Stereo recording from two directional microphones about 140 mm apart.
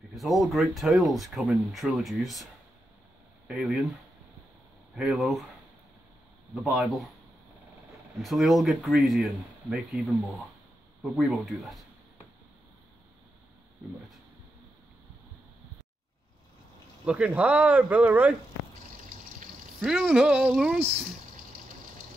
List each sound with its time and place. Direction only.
0.1 s speech: centre (ahead or behind)
4.9 s speech: centre (ahead or behind)
6.5 s speech: centre (ahead or behind)
8.2 s speech: centre (ahead or behind)
17.0 s speech: 5° right (ahead or behind)
19.0 s water: 85° right
19.8 s speech: 5° right (ahead or behind)